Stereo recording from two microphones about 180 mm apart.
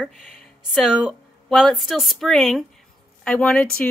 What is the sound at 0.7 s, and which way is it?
Speech, centre (ahead or behind).